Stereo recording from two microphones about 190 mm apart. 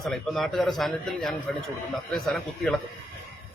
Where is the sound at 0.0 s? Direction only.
Centre (ahead or behind).